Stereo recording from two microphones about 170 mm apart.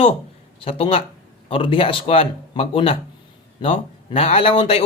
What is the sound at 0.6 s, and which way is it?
Speech, 35° left (ahead or behind).